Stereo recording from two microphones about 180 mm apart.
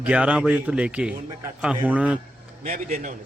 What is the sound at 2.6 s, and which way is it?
Speech, 45° right (ahead or behind).